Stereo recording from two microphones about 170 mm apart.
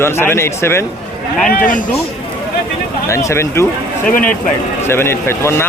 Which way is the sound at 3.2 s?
15° left (ahead or behind).